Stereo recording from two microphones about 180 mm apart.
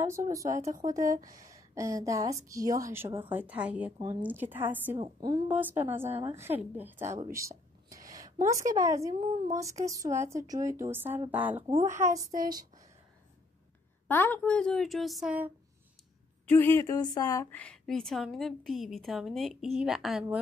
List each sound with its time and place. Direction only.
0.0 s a woman's voice: 15° right (ahead or behind)
0.8 s speech: 50° right (ahead or behind)
1.2 s a woman's voice: 20° right (ahead or behind)
4.9 s a woman's voice: 30° right (ahead or behind)
5.3 s a woman's voice: 10° right (ahead or behind)
7.3 s a sound: 15° right (ahead or behind)
8.5 s a woman's voice: 20° right (ahead or behind)
14.0 s a woman's voice: 10° left (ahead or behind); by 15.5 s 5° right (ahead or behind)
16.4 s a woman's voice: 10° left (ahead or behind)